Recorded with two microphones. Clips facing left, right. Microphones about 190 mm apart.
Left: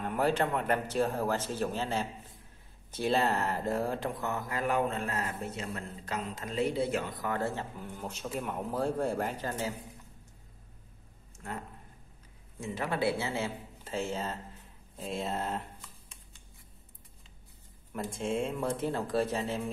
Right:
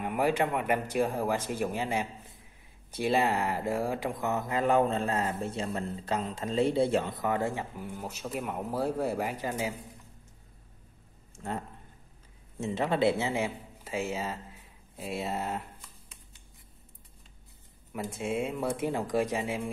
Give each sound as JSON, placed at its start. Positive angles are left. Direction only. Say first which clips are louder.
{"t": 0.0, "sound": "speech", "louder": "right 1 dB", "side_deg": -10}
{"t": 11.3, "sound": "a sound", "louder": "right 5 dB", "side_deg": -30}
{"t": 12.5, "sound": "a man's voice", "louder": "right 5 dB", "side_deg": -25}
{"t": 17.9, "sound": "speech", "louder": "right 1 dB", "side_deg": -10}